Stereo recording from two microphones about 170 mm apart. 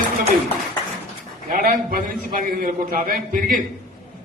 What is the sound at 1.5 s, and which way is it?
A man's voice, 55° right (ahead or behind).